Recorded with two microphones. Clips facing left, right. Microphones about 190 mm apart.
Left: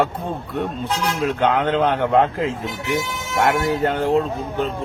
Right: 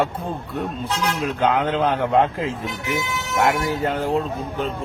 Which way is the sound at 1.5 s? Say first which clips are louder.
Left 2 dB; centre (ahead or behind).